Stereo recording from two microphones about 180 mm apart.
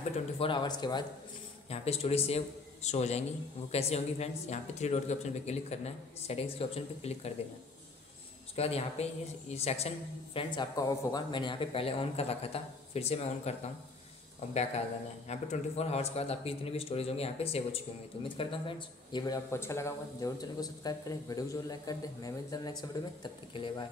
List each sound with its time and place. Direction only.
0.4 s speech: 25° left (ahead or behind)
1.7 s a woman's voice: 35° left (ahead or behind)
8.5 s a woman's voice: 35° left (ahead or behind)